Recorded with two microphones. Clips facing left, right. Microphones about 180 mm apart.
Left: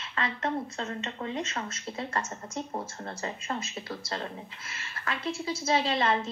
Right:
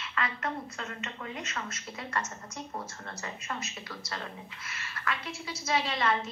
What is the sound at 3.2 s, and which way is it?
A woman's voice, 30° left (ahead or behind).